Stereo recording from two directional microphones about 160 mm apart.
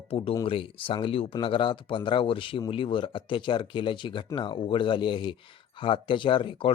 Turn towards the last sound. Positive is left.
turn(degrees=35)  # may be behind; listen again after turning